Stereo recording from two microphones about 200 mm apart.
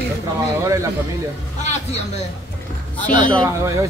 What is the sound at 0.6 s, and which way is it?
Speech, 15° right (ahead or behind).